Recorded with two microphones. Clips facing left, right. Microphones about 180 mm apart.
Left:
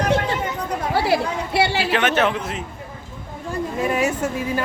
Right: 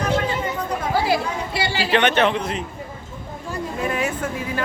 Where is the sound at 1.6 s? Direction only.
65° left (ahead or behind).